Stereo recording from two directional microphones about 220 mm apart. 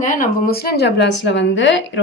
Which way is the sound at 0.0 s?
35° left (ahead or behind).